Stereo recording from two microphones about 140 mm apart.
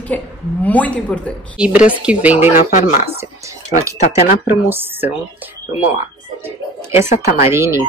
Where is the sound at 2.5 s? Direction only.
75° left (ahead or behind).